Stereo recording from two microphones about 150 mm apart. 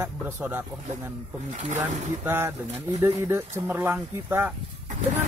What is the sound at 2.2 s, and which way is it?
Speech, 15° right (ahead or behind).